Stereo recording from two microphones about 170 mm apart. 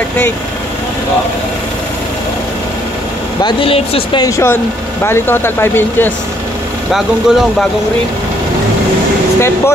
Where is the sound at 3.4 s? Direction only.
30° left (ahead or behind).